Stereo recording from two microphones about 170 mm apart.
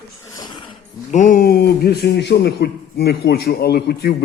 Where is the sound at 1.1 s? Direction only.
50° left (ahead or behind).